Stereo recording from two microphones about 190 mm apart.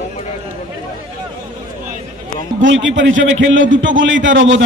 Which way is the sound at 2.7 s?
80° right.